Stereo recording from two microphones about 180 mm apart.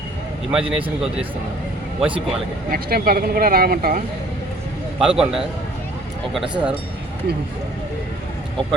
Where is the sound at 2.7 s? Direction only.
55° right (ahead or behind).